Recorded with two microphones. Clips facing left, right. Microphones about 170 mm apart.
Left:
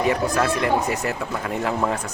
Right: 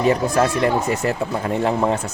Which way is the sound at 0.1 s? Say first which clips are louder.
Right 3 dB; 30° right (ahead or behind).